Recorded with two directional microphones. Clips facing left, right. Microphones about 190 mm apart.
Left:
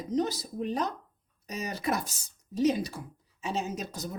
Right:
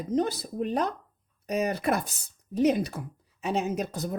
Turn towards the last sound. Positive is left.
turn(degrees=-60)  # may be behind; listen again after turning